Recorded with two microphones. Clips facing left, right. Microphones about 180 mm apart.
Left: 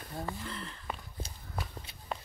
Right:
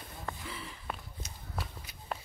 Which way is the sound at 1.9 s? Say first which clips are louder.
Right 1 dB; 30° left (ahead or behind).